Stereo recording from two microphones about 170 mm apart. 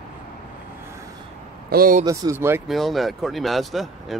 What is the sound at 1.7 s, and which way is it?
Speech, 55° right (ahead or behind).